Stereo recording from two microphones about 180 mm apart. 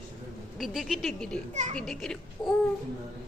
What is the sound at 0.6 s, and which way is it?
Speech, centre (ahead or behind).